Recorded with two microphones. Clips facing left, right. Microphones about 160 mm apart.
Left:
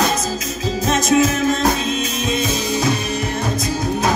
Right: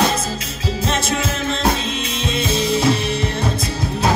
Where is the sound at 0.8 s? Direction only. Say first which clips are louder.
Left 7 dB; 30° right (ahead or behind).